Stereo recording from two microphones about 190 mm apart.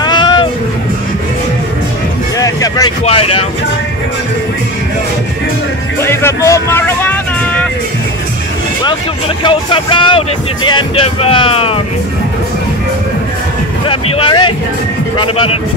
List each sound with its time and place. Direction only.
0.0 s music: 20° left (ahead or behind)
2.3 s vehicle: 20° left (ahead or behind)
3.1 s speech: 30° left (ahead or behind)
5.9 s speech: 15° left (ahead or behind)
9.4 s speech: 25° left (ahead or behind)
13.8 s speech: 30° left (ahead or behind)